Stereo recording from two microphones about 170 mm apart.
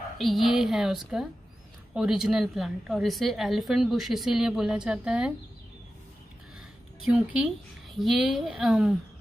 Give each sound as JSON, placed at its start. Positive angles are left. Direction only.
{"t": 0.2, "sound": "a woman's voice", "side_deg": 0}
{"t": 7.1, "sound": "a woman's voice", "side_deg": -5}